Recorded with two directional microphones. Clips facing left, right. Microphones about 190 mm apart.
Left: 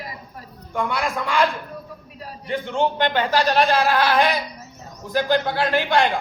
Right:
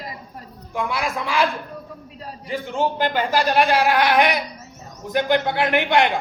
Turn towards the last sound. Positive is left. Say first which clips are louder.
# right 1 dB
turn(degrees=-20)  # may be behind; listen again after turning